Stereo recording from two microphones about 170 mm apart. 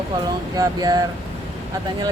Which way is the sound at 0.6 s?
20° right (ahead or behind).